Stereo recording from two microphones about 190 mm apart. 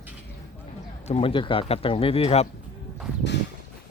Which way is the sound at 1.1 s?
30° left (ahead or behind).